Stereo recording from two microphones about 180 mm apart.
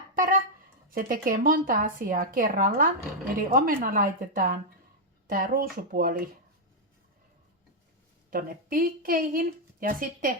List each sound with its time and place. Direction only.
0.1 s a sound: 50° right (ahead or behind)
0.9 s speech: 55° right (ahead or behind)
8.3 s speech: 55° right (ahead or behind)